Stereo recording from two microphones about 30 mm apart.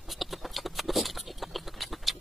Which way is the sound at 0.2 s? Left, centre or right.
Centre.